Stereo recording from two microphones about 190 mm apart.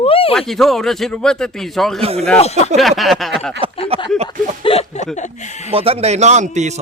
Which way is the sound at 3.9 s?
30° right (ahead or behind).